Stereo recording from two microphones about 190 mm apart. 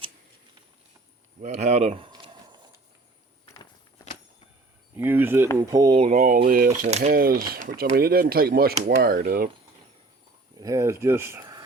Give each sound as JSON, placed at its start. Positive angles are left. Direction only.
{"t": 1.4, "sound": "a sound", "side_deg": -35}
{"t": 3.5, "sound": "walk", "side_deg": 15}
{"t": 4.9, "sound": "speech", "side_deg": -10}
{"t": 6.0, "sound": "speech", "side_deg": -40}
{"t": 6.7, "sound": "speech", "side_deg": -35}
{"t": 10.6, "sound": "speech", "side_deg": -15}